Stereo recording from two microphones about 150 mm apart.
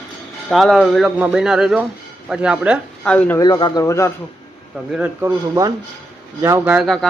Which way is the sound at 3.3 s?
25° left (ahead or behind).